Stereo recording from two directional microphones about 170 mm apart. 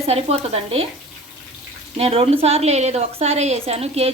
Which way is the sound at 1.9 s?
35° right (ahead or behind).